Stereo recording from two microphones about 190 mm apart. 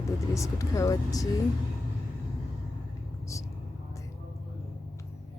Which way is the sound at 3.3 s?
15° left (ahead or behind).